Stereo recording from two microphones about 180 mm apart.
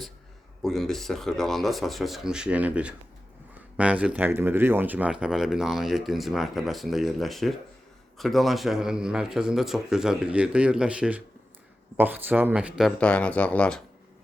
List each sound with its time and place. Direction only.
0.6 s speech: centre (ahead or behind)
13.0 s speech: 5° left (ahead or behind)